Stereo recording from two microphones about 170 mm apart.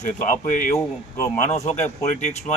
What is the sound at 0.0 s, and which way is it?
Speech, 45° left (ahead or behind).